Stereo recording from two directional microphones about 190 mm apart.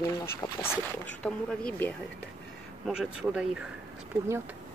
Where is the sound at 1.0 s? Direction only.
5° left (ahead or behind).